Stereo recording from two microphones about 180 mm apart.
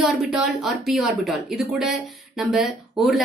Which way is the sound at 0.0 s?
5° right (ahead or behind).